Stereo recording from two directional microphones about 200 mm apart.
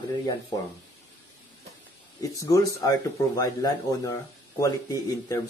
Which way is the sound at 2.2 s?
15° left (ahead or behind).